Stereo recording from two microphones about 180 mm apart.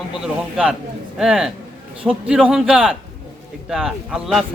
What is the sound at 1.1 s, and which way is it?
Speech, centre (ahead or behind).